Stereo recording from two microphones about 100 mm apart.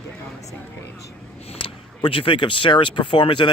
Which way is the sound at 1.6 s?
65° left (ahead or behind).